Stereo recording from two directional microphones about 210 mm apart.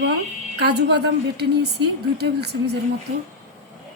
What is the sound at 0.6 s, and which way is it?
A woman's voice, 50° right (ahead or behind).